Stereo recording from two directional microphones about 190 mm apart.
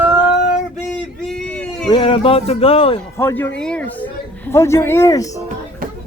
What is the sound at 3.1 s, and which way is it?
Speech, 10° left (ahead or behind).